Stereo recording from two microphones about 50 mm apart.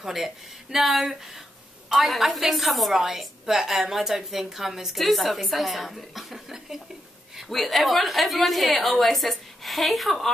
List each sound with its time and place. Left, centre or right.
0.0 s a woman's voice: centre